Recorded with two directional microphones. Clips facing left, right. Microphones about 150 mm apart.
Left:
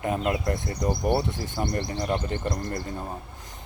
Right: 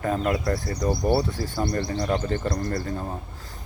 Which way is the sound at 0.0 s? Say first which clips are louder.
Right 2 dB; 20° left (ahead or behind).